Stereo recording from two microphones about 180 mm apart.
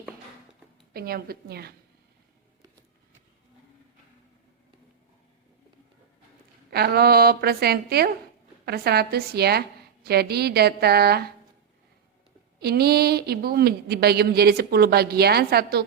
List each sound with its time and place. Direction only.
0.9 s a woman's voice: 55° right (ahead or behind)
6.7 s a woman's voice: 60° right (ahead or behind)
12.5 s a woman's voice: 60° right (ahead or behind)